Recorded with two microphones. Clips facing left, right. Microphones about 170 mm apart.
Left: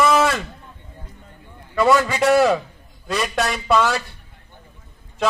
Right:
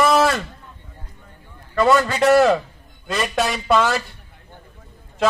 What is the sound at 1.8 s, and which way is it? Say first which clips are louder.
Speech: even; 5° left (ahead or behind).